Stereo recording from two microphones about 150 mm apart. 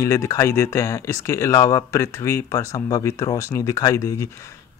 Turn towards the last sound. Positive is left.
turn(degrees=20)  # may be behind; listen again after turning